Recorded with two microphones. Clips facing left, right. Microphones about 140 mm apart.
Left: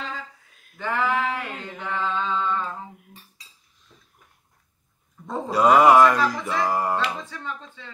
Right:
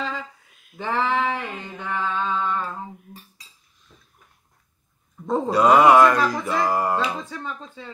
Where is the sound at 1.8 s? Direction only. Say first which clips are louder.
Right 1 dB; 15° right (ahead or behind).